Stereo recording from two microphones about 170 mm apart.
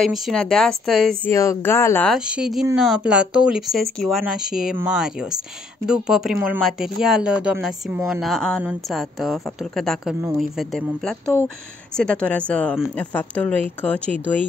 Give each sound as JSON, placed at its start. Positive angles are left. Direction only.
{"t": 0.0, "sound": "speech", "side_deg": 0}
{"t": 1.3, "sound": "speech", "side_deg": 15}
{"t": 2.0, "sound": "speech", "side_deg": -5}